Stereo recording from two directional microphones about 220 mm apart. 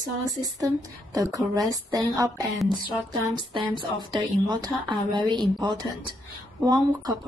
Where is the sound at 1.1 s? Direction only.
15° right (ahead or behind).